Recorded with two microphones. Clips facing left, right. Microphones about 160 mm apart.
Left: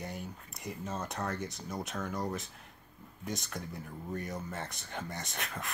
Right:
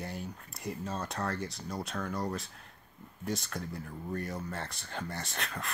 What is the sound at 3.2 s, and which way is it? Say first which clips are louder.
Speech: right 3 dB; 20° left (ahead or behind).